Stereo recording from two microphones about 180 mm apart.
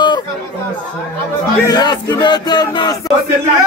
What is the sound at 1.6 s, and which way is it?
Speech, 20° left (ahead or behind).